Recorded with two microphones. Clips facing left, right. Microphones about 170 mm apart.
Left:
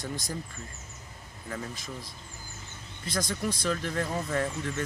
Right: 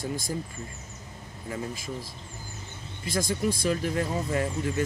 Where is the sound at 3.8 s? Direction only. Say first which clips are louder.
Right 3 dB; 20° right (ahead or behind).